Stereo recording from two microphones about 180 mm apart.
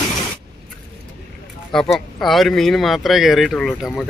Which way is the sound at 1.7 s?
Centre (ahead or behind).